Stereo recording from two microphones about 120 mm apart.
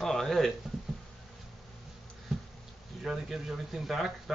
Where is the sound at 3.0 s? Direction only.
5° right (ahead or behind).